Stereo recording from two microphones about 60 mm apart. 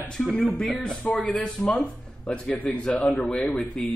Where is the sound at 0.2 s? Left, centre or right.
Centre.